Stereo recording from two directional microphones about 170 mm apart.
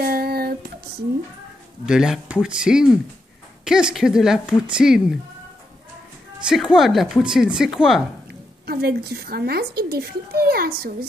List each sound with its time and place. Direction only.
0.0 s a sound: 65° right (ahead or behind)
1.9 s a woman's voice: 5° right (ahead or behind)
6.5 s a woman's voice: centre (ahead or behind)
8.6 s speech: 65° right (ahead or behind)